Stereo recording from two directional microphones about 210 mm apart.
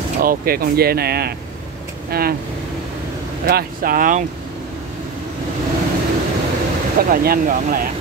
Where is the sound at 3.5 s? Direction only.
45° right (ahead or behind).